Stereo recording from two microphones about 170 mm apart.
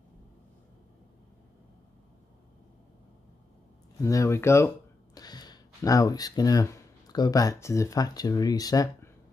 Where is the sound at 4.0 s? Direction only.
15° left (ahead or behind).